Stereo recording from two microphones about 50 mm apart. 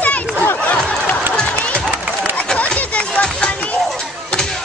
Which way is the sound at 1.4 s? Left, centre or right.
Left.